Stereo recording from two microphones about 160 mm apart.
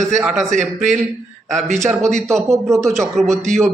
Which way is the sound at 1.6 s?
50° right (ahead or behind).